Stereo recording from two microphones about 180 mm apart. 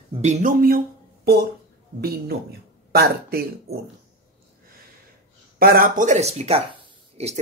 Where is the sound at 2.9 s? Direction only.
60° right (ahead or behind).